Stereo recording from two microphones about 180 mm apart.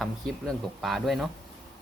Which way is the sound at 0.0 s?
Centre (ahead or behind).